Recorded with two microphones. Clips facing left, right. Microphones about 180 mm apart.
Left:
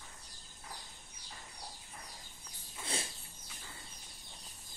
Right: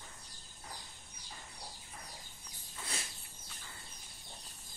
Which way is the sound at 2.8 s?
25° left (ahead or behind).